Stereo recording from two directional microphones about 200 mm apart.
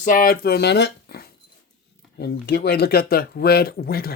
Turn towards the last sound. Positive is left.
turn(degrees=50)  # may be behind; listen again after turning